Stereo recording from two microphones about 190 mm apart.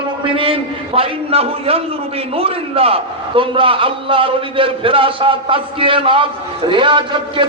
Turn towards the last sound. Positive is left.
turn(degrees=-25)  # may be behind; listen again after turning